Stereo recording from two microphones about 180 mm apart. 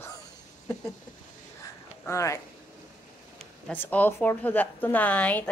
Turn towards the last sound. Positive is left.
turn(degrees=10)  # may be behind; listen again after turning